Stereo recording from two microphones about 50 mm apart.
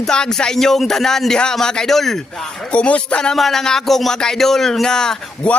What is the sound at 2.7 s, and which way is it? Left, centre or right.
Speech, left.